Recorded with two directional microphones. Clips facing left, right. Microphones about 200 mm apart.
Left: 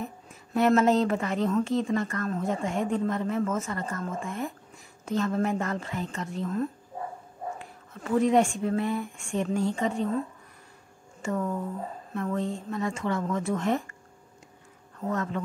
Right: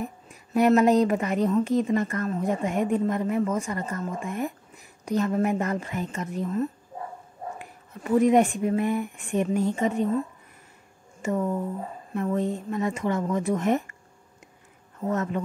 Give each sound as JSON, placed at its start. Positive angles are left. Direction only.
{"t": 0.0, "sound": "a woman's voice", "side_deg": -15}
{"t": 7.5, "sound": "a woman's voice", "side_deg": -15}
{"t": 11.2, "sound": "a woman's voice", "side_deg": -20}
{"t": 15.0, "sound": "speech", "side_deg": -20}